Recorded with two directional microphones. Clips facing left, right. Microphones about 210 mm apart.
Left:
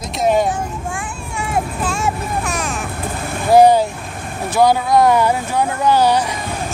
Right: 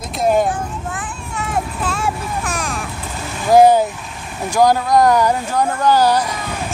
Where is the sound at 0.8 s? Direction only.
10° left (ahead or behind).